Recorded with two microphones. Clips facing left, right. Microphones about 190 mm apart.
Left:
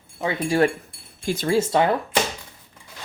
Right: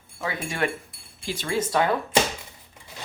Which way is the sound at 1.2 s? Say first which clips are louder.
Left 7 dB; 40° left (ahead or behind).